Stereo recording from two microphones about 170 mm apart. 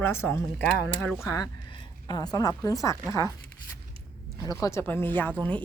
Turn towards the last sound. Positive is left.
turn(degrees=10)  # may be behind; listen again after turning